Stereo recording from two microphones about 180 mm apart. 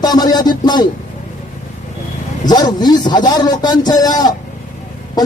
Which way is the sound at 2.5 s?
20° left (ahead or behind).